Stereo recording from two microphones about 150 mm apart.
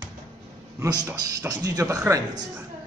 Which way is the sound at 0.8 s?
20° right (ahead or behind).